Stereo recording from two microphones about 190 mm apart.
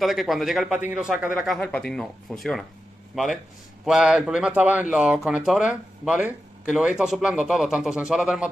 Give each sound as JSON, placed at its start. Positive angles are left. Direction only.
{"t": 0.0, "sound": "speech", "side_deg": 0}